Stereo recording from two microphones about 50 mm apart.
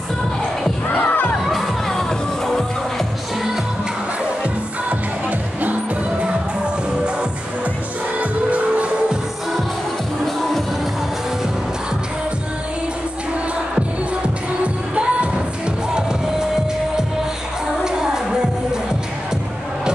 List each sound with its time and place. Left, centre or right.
1.0 s children shouting: left
1.4 s music: centre
8.2 s music: right
15.0 s music: right
17.8 s music: centre